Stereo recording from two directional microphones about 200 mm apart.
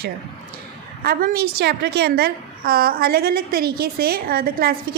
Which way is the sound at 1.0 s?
50° right (ahead or behind).